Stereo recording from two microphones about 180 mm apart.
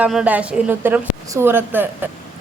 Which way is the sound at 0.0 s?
5° right (ahead or behind).